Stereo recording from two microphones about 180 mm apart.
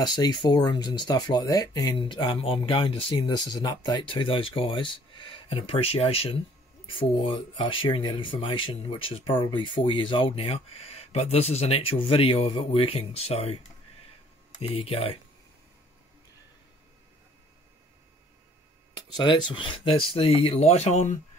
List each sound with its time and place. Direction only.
0.0 s speech: 25° left (ahead or behind)
14.6 s speech: 30° left (ahead or behind)
18.9 s speech: 25° left (ahead or behind); by 21.2 s 40° left (ahead or behind)